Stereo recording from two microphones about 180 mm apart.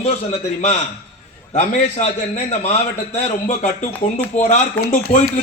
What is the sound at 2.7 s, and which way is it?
A man's voice, 40° left (ahead or behind).